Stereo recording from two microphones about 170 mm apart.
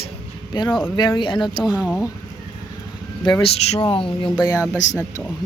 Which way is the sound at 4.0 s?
30° left (ahead or behind).